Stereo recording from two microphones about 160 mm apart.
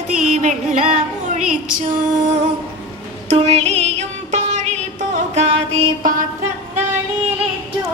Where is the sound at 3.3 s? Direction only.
40° right (ahead or behind).